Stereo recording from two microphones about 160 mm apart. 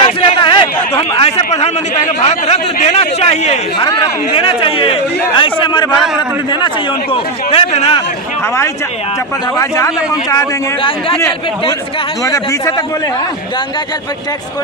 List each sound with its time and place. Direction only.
0.0 s a sound: 30° left (ahead or behind)
1.2 s a sound: 45° left (ahead or behind)
3.8 s speech: 25° left (ahead or behind)
7.1 s speech: 40° left (ahead or behind)
9.6 s speech: 20° left (ahead or behind)
12.2 s speech: 20° left (ahead or behind)